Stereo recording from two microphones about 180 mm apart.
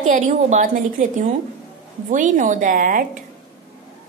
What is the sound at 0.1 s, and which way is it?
A woman's voice, 45° right (ahead or behind).